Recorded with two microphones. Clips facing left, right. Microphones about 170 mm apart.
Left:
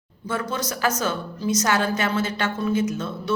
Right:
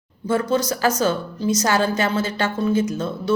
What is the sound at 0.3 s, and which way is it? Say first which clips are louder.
A woman's voice: right 7 dB; 30° right (ahead or behind).